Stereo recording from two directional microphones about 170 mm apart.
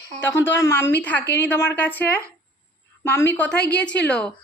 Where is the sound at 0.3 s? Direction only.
15° left (ahead or behind).